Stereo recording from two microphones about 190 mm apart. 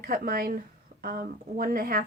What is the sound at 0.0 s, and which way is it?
A woman's voice, 50° right (ahead or behind).